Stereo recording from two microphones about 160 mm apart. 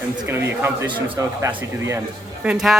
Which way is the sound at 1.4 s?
20° right (ahead or behind).